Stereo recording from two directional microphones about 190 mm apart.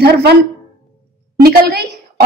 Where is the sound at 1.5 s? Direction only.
55° right (ahead or behind).